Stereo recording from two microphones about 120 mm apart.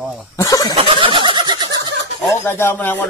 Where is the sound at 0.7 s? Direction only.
50° right (ahead or behind).